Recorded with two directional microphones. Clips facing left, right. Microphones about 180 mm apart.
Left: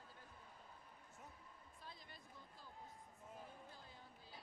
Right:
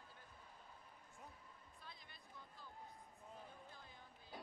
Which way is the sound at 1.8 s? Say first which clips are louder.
Left 3 dB; 40° left (ahead or behind).